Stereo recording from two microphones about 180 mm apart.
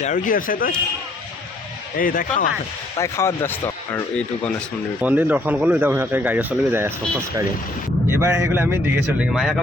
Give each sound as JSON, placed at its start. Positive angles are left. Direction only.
{"t": 0.0, "sound": "speech", "side_deg": 45}
{"t": 2.0, "sound": "speech", "side_deg": 50}
{"t": 3.0, "sound": "speech", "side_deg": 15}
{"t": 4.9, "sound": "speech", "side_deg": -10}
{"t": 8.1, "sound": "speech", "side_deg": -15}